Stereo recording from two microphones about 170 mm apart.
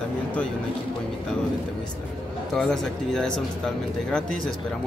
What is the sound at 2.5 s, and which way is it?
Speech, centre (ahead or behind).